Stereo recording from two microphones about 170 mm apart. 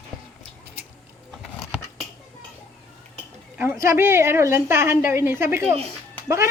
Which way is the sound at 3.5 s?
15° right (ahead or behind).